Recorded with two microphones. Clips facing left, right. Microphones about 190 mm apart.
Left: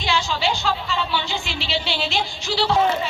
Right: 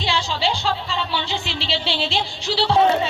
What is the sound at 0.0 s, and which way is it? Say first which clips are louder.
Music: even; 30° right (ahead or behind).